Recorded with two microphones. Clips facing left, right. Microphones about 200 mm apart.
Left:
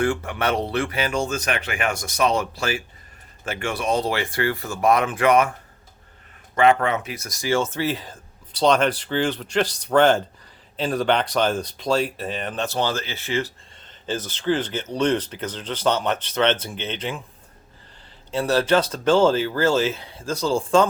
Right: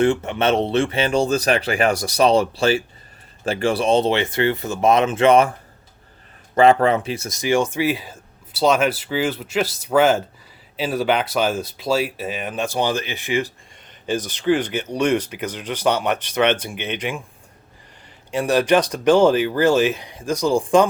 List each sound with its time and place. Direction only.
0.0 s speech: 20° right (ahead or behind)
18.3 s speech: 15° right (ahead or behind)